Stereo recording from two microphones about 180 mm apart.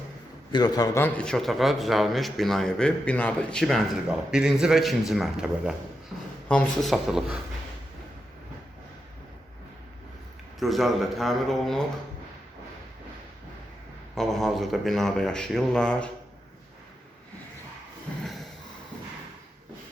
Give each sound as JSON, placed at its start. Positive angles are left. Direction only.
{"t": 0.5, "sound": "a man's voice", "side_deg": 25}
{"t": 1.0, "sound": "speech", "side_deg": 5}
{"t": 10.6, "sound": "speech", "side_deg": 0}
{"t": 14.2, "sound": "speech", "side_deg": 0}
{"t": 18.2, "sound": "snort", "side_deg": 0}